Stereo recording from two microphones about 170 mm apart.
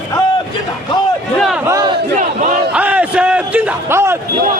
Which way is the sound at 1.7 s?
20° right (ahead or behind).